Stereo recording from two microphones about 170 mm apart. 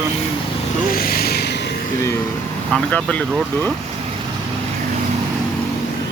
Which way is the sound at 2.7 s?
5° left (ahead or behind).